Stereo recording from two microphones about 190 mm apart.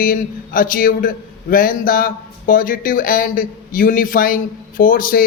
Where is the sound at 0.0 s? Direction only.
45° left (ahead or behind).